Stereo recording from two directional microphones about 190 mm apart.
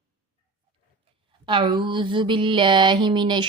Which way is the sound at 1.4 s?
25° right (ahead or behind).